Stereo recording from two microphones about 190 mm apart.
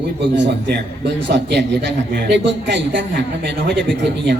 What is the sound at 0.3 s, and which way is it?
A man's voice, 65° right (ahead or behind).